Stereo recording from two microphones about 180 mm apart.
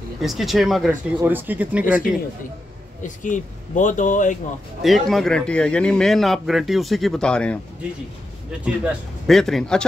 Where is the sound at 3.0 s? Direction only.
45° left (ahead or behind).